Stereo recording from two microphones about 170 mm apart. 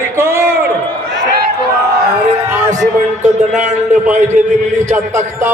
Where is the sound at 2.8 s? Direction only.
45° right (ahead or behind).